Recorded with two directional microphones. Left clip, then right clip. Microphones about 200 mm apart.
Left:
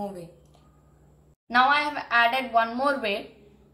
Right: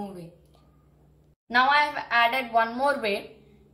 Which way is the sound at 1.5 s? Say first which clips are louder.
Even; 5° right (ahead or behind).